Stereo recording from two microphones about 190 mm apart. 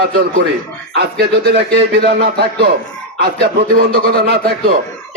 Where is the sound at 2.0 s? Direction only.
60° right (ahead or behind).